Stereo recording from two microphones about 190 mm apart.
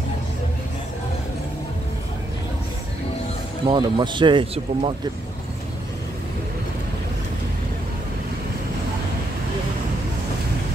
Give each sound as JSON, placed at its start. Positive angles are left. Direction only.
{"t": 3.6, "sound": "speech", "side_deg": -25}